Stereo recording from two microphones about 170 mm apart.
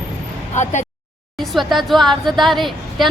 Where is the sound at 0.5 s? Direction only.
45° left (ahead or behind).